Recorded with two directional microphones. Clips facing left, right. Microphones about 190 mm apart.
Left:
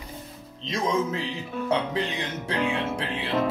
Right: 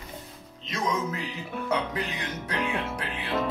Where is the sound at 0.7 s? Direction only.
30° left (ahead or behind).